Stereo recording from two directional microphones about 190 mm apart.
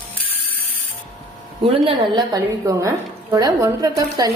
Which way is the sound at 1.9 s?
20° right (ahead or behind).